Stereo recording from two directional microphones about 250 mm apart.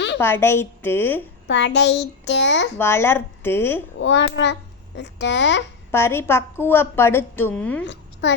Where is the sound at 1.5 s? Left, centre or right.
Left.